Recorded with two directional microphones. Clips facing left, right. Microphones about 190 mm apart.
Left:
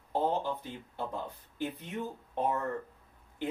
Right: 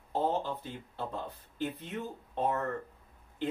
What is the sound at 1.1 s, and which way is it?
Speech, 15° left (ahead or behind).